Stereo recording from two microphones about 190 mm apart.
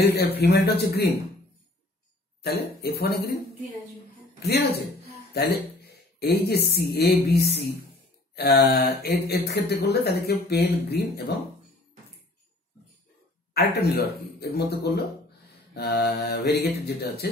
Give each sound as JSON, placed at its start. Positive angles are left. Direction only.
{"t": 0.0, "sound": "speech", "side_deg": 55}
{"t": 2.4, "sound": "speech", "side_deg": 55}
{"t": 4.4, "sound": "speech", "side_deg": 60}
{"t": 13.5, "sound": "speech", "side_deg": 55}